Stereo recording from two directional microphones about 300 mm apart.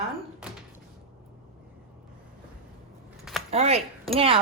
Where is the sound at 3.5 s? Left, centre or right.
Centre.